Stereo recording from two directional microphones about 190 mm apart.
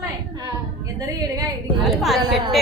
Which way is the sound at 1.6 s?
Centre (ahead or behind).